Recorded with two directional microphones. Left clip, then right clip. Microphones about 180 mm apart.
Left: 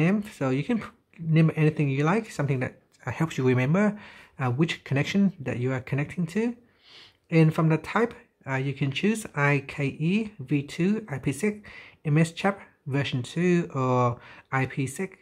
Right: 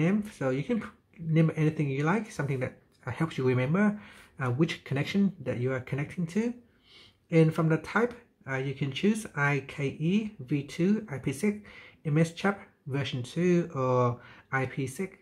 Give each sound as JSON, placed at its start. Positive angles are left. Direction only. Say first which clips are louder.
{"t": 0.0, "sound": "speech", "louder": "left 3 dB", "side_deg": 30}